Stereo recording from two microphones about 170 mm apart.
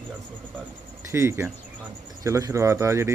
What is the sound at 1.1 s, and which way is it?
Speech, 15° right (ahead or behind).